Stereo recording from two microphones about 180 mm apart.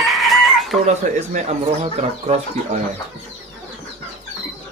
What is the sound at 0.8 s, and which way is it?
Speech, 40° right (ahead or behind).